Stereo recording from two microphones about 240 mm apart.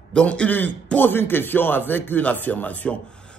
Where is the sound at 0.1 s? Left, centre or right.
Centre.